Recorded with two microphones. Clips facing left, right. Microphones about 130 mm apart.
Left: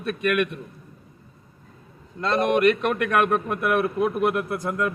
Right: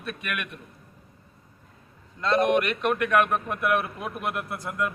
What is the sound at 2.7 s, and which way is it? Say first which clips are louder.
A man's voice: left 3 dB; 40° left (ahead or behind).